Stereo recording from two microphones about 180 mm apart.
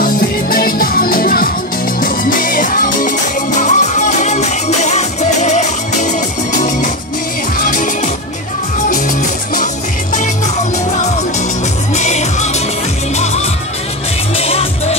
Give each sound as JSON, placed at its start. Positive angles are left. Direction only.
{"t": 0.0, "sound": "music", "side_deg": 55}
{"t": 7.7, "sound": "music", "side_deg": 45}
{"t": 11.9, "sound": "music", "side_deg": 40}